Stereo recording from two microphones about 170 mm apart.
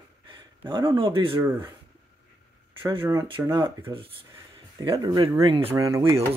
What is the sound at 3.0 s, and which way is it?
Speech, 20° right (ahead or behind).